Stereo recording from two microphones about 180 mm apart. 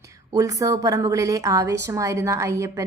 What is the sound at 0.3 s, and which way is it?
A woman's voice, 20° right (ahead or behind).